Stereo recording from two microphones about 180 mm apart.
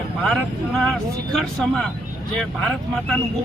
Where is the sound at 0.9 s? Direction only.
Centre (ahead or behind).